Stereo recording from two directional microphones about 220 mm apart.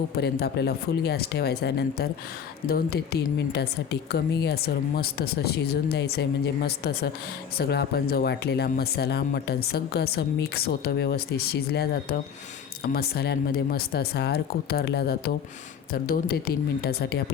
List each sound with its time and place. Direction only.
0.2 s speech: 45° left (ahead or behind)